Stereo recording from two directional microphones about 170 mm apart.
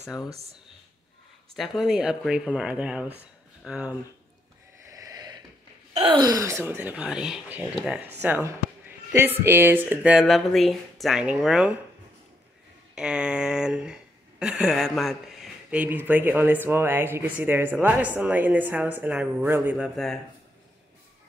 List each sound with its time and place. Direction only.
1.5 s speech: centre (ahead or behind)
4.9 s a sound: 20° right (ahead or behind)
5.9 s speech: 30° right (ahead or behind); by 11.8 s 5° right (ahead or behind)
12.9 s speech: 5° right (ahead or behind)